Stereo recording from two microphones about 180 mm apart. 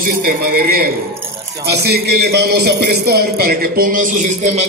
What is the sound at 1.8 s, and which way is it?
A man's voice, 60° right (ahead or behind).